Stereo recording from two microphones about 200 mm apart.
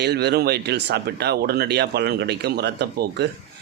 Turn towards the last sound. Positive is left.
turn(degrees=-55)  # may be behind; listen again after turning